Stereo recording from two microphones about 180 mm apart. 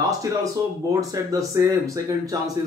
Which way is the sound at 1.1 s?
20° right (ahead or behind).